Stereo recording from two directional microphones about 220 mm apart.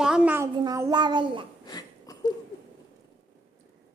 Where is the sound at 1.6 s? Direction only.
15° left (ahead or behind).